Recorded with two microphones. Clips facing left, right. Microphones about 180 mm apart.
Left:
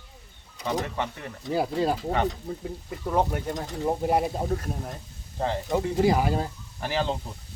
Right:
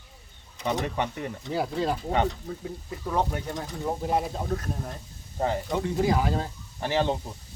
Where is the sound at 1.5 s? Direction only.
5° left (ahead or behind).